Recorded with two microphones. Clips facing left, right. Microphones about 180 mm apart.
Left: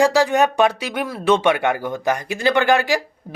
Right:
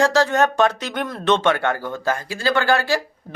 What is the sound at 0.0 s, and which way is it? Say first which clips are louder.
Speech: left 2 dB; 10° left (ahead or behind).